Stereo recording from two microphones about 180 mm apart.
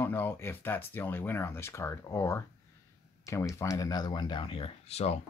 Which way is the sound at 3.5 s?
20° left (ahead or behind).